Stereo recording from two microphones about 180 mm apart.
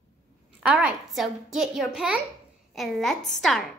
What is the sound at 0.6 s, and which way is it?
A woman's voice, 5° right (ahead or behind).